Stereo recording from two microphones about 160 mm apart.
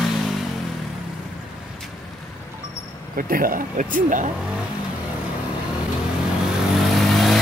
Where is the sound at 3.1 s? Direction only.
60° right (ahead or behind).